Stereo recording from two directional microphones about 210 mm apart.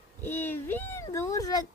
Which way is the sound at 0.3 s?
10° left (ahead or behind).